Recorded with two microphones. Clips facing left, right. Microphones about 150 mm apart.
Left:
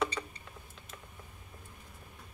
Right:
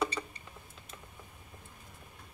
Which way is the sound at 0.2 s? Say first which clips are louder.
Even; 5° right (ahead or behind).